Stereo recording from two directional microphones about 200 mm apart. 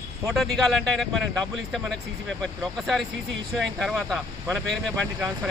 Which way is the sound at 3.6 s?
Centre (ahead or behind).